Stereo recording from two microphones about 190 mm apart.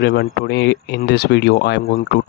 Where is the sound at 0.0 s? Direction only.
60° left (ahead or behind).